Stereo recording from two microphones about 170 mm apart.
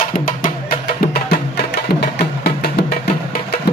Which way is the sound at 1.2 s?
70° left (ahead or behind).